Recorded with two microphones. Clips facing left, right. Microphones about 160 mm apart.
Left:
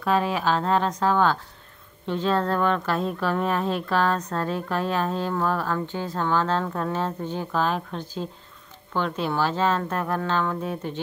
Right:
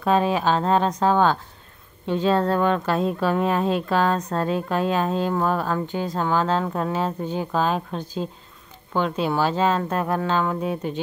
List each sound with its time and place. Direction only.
0.0 s a woman's voice: 25° right (ahead or behind)